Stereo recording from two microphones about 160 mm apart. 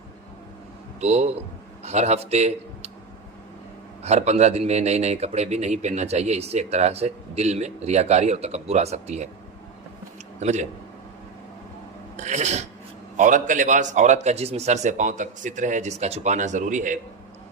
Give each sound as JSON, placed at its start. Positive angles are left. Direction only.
{"t": 1.0, "sound": "speech", "side_deg": -45}
{"t": 4.0, "sound": "speech", "side_deg": -45}
{"t": 10.4, "sound": "speech", "side_deg": -45}
{"t": 12.1, "sound": "speech", "side_deg": -45}